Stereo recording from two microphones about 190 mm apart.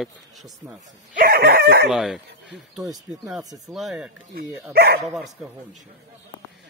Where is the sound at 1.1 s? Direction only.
50° right (ahead or behind).